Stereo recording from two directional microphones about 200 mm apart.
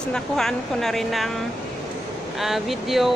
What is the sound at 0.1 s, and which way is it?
Speech, centre (ahead or behind).